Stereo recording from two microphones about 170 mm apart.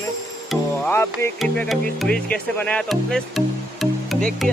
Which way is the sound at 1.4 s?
Centre (ahead or behind).